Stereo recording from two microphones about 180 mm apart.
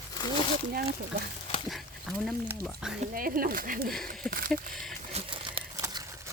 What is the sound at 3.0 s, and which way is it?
Speech, 50° right (ahead or behind).